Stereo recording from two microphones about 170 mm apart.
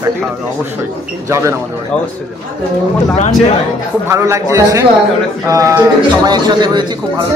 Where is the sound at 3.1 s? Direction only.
40° left (ahead or behind).